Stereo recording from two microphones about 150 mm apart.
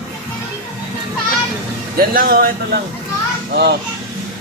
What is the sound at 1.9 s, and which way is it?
Speech, 85° right.